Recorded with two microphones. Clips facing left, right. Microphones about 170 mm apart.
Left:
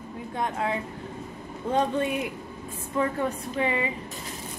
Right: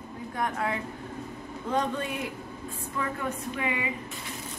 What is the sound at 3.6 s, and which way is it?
Music, 30° left (ahead or behind).